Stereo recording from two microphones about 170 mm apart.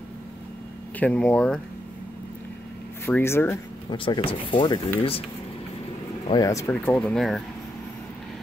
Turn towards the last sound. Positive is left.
turn(degrees=0)  # may be behind; listen again after turning